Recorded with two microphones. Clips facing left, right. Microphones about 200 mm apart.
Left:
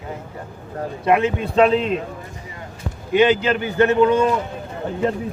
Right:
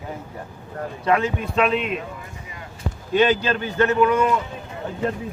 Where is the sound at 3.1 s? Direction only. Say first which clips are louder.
Left 3 dB; 15° left (ahead or behind).